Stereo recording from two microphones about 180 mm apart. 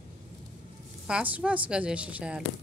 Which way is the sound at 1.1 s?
5° right (ahead or behind).